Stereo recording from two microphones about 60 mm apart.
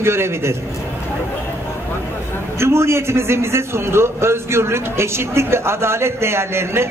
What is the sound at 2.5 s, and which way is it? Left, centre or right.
A man's voice, right.